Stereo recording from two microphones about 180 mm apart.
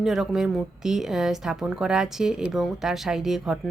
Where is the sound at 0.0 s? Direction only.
5° right (ahead or behind).